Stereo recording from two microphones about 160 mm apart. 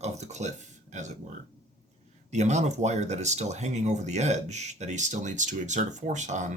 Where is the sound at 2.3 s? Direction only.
45° right (ahead or behind).